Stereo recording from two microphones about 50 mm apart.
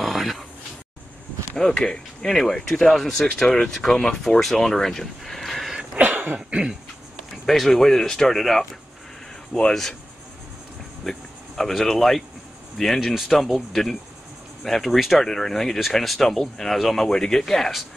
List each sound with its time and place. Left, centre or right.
0.0 s a sound: centre
1.6 s speech: centre
3.4 s speech: centre
5.8 s cough: right
6.5 s speech: centre
7.4 s speech: centre
9.7 s speech: centre
11.1 s speech: centre